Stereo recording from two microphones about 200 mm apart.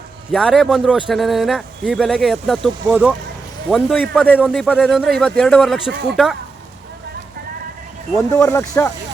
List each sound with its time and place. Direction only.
0.3 s a man's voice: centre (ahead or behind)
5.9 s speech: 55° right (ahead or behind)
8.1 s speech: 10° left (ahead or behind)